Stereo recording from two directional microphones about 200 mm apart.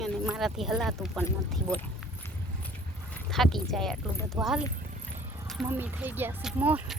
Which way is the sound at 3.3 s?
Centre (ahead or behind).